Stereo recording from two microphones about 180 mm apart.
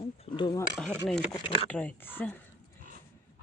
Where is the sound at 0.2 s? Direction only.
25° left (ahead or behind).